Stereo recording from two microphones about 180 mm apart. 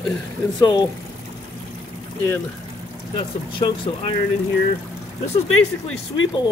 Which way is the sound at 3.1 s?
25° left (ahead or behind).